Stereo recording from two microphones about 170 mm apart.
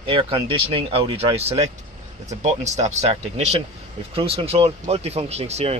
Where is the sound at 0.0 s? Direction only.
30° right (ahead or behind).